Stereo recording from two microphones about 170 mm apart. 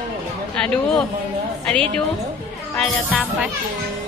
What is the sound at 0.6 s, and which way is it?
Speech, 5° left (ahead or behind).